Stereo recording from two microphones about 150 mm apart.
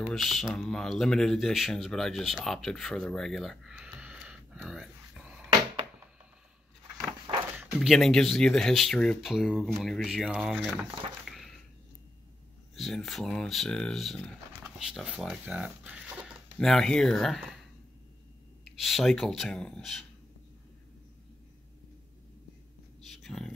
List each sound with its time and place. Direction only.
0.0 s speech: centre (ahead or behind)
7.5 s speech: centre (ahead or behind)
11.2 s a sound: centre (ahead or behind)
12.7 s speech: centre (ahead or behind)
16.5 s speech: centre (ahead or behind)
18.8 s speech: centre (ahead or behind)
23.1 s a sound: centre (ahead or behind)